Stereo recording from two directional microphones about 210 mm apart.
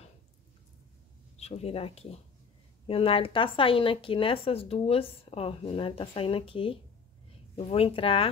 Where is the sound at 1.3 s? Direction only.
30° left (ahead or behind).